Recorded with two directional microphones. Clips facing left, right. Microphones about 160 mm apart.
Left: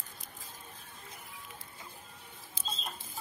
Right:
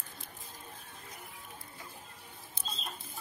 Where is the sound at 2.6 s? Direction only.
90° left.